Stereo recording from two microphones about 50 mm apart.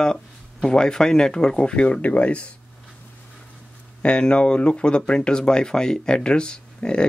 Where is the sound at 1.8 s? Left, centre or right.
Left.